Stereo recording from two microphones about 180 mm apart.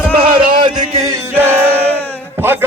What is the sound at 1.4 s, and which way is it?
Battle cry, 10° right (ahead or behind).